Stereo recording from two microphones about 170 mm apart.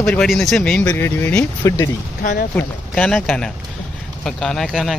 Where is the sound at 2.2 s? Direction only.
60° left (ahead or behind).